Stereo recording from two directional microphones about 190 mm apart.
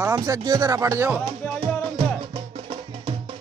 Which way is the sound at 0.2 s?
20° right (ahead or behind).